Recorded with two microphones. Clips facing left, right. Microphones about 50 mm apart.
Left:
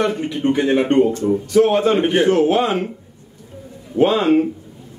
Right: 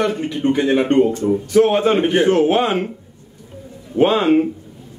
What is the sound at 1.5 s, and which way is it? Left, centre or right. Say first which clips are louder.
Speech: even; right.